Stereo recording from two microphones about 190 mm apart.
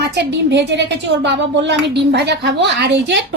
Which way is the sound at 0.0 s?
65° right (ahead or behind).